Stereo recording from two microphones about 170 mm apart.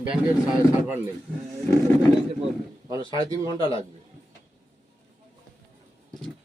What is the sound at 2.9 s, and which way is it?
Speech, 20° right (ahead or behind).